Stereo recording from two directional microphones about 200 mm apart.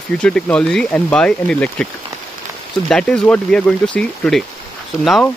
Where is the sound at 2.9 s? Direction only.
5° left (ahead or behind).